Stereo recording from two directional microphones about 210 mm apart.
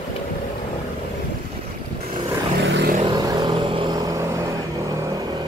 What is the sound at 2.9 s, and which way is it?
Vehicle, 20° right (ahead or behind).